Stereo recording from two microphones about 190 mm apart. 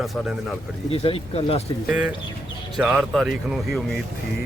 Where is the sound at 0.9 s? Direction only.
30° left (ahead or behind).